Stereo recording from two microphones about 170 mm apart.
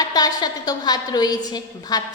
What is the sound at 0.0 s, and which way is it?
A woman's voice, 20° left (ahead or behind).